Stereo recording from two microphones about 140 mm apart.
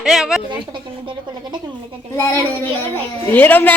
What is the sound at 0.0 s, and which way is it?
Speech, 5° right (ahead or behind).